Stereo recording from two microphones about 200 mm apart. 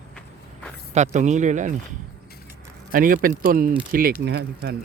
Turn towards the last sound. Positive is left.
turn(degrees=-55)  # may be behind; listen again after turning